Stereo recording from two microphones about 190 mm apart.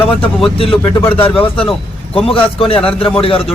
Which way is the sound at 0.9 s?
25° left (ahead or behind).